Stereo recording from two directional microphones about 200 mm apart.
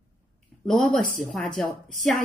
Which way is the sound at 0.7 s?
Centre (ahead or behind).